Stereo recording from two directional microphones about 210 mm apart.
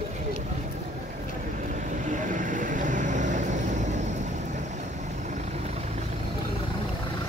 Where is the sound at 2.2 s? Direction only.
40° right (ahead or behind).